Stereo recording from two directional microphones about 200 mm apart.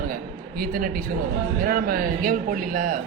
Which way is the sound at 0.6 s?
45° right (ahead or behind).